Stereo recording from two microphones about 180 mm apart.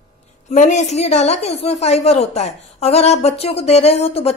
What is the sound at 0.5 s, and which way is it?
A woman's voice, 40° left (ahead or behind).